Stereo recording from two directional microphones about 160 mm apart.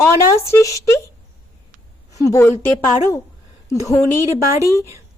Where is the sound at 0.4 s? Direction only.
20° left (ahead or behind).